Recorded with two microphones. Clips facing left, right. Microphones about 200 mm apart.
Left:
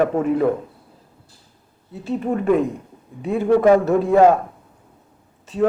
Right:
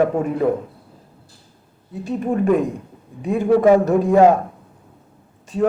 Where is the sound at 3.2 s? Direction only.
15° right (ahead or behind).